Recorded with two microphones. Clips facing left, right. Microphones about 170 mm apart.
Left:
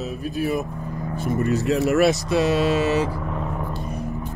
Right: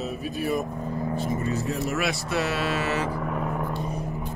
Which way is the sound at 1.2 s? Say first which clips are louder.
Left 10 dB; 75° left (ahead or behind).